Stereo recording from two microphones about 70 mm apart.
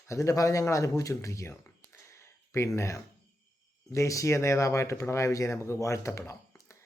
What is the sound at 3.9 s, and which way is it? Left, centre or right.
Speech, left.